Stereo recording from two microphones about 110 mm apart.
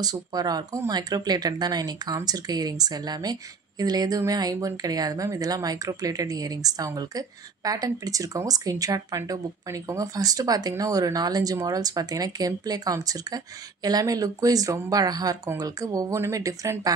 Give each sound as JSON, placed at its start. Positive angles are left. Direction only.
{"t": 0.0, "sound": "speech", "side_deg": -35}